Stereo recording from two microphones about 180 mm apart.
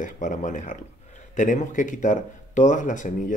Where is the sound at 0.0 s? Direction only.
45° left (ahead or behind).